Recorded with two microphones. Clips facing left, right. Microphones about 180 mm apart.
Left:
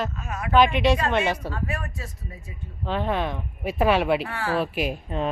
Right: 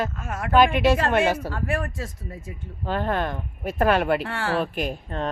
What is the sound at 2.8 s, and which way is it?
Speech, centre (ahead or behind).